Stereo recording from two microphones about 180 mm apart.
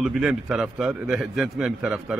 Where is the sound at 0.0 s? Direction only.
5° right (ahead or behind).